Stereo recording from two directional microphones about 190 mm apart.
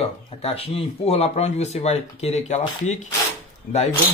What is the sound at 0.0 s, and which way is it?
Speech, 30° left (ahead or behind).